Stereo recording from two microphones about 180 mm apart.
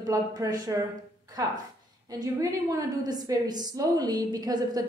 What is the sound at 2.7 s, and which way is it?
A woman's voice, 20° right (ahead or behind).